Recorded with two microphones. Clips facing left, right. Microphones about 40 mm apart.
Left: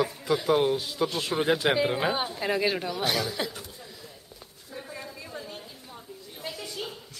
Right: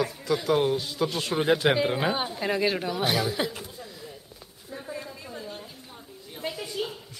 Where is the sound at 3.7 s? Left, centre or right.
Centre.